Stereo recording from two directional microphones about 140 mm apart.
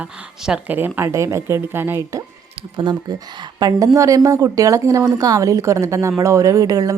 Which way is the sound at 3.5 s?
25° right (ahead or behind).